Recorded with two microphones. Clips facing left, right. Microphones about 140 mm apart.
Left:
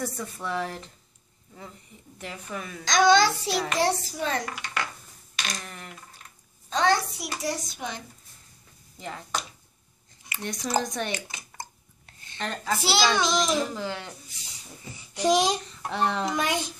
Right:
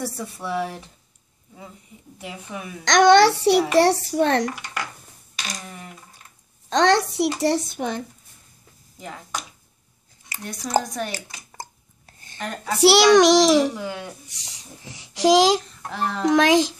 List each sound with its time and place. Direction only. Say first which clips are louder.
0.0 s speech: right 2 dB; 10° right (ahead or behind)
2.1 s speech: right 2 dB; 10° right (ahead or behind)
2.8 s a child's voice: right 6 dB; 70° right (ahead or behind)
4.5 s speech: right 2 dB; 15° right (ahead or behind)
6.7 s a child's voice: right 5 dB; 80° right; by 8.0 s 55° right (ahead or behind)
10.4 s speech: right 3 dB; 5° right (ahead or behind)
12.4 s speech: right 1 dB; 10° right (ahead or behind)
12.7 s a child's voice: right 11 dB; 70° right (ahead or behind); by 13.7 s 90° right
13.7 s speech: right 2 dB; 10° right (ahead or behind)
14.4 s a child's voice: right 2 dB; 85° right
15.6 s speech: left 1 dB; centre (ahead or behind)
16.3 s a child's voice: right 11 dB; 90° right